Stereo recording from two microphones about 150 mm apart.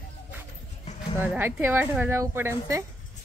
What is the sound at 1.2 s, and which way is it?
Speech, 10° right (ahead or behind).